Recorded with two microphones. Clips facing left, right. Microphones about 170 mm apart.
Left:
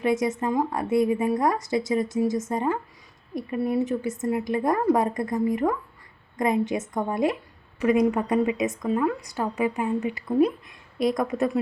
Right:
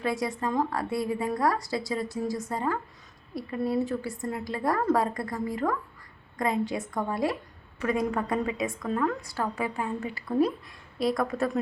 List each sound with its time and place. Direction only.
0.0 s a woman's voice: 20° left (ahead or behind)